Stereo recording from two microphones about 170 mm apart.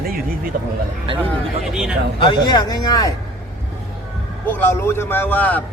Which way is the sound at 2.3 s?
25° left (ahead or behind).